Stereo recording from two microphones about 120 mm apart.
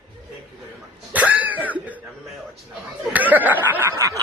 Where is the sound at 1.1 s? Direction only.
10° right (ahead or behind).